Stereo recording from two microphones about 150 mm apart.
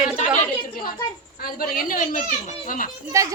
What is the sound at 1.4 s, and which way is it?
A woman's voice, 75° left (ahead or behind).